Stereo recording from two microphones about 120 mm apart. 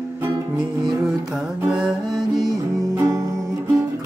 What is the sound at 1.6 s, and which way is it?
Music, centre (ahead or behind).